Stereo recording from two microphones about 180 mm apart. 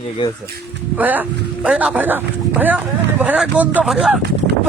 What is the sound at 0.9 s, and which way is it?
Speech, 10° right (ahead or behind).